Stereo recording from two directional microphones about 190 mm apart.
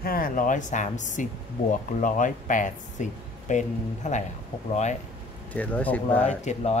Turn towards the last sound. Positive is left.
turn(degrees=35)  # may be behind; listen again after turning